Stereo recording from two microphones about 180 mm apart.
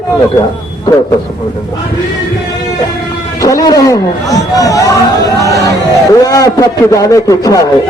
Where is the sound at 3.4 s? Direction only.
20° left (ahead or behind).